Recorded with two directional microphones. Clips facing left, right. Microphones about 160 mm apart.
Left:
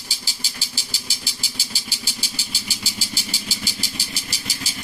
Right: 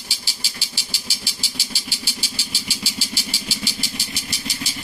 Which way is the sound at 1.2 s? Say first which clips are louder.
Right 2 dB; 45° left (ahead or behind).